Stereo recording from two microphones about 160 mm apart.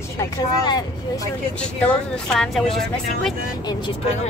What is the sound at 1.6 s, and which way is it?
Speech, 5° left (ahead or behind).